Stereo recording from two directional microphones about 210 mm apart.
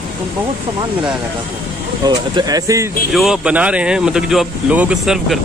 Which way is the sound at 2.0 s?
20° right (ahead or behind).